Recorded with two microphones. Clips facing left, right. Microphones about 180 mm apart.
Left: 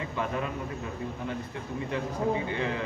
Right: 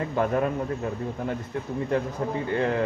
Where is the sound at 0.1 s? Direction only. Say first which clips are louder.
Right 8 dB; 50° right (ahead or behind).